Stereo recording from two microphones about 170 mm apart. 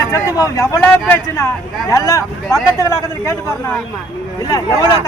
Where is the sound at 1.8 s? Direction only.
20° left (ahead or behind).